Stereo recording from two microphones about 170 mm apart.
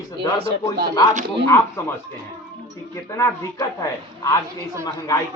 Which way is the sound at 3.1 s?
20° left (ahead or behind).